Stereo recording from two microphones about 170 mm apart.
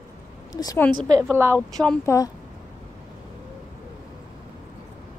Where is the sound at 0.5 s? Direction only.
20° left (ahead or behind).